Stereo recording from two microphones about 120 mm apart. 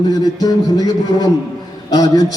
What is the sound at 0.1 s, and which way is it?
Speech, 30° left (ahead or behind).